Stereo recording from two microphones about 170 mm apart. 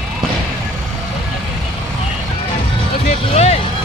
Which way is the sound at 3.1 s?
40° left (ahead or behind).